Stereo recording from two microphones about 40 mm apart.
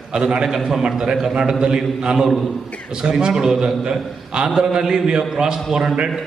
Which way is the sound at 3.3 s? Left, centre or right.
Centre.